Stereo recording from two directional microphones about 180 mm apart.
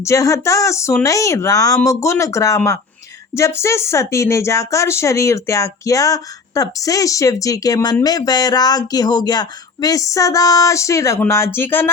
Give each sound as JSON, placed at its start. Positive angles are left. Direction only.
{"t": 0.0, "sound": "speech", "side_deg": 15}